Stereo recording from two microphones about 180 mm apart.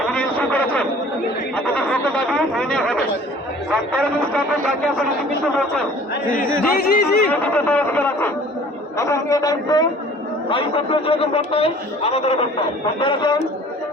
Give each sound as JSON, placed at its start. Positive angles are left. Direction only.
{"t": 0.1, "sound": "a sound", "side_deg": 10}
{"t": 3.7, "sound": "a man's voice", "side_deg": 5}
{"t": 6.7, "sound": "speech", "side_deg": 55}
{"t": 7.3, "sound": "a man's voice", "side_deg": 10}